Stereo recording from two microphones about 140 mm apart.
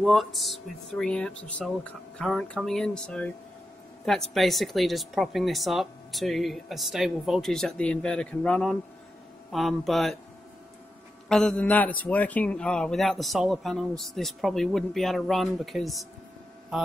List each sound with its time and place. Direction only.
0.0 s a man's voice: centre (ahead or behind)
11.2 s a man's voice: 5° left (ahead or behind)